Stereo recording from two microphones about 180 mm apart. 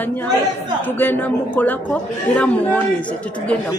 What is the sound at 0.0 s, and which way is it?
A woman's voice, 10° left (ahead or behind).